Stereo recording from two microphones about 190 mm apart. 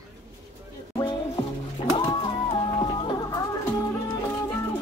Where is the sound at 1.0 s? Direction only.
20° left (ahead or behind).